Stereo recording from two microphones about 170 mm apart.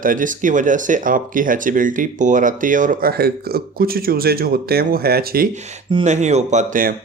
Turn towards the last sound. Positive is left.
turn(degrees=-50)  # may be behind; listen again after turning